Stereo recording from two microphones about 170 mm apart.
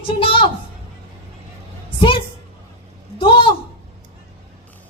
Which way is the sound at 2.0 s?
30° left (ahead or behind).